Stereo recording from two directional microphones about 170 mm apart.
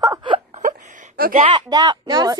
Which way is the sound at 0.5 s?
45° right (ahead or behind).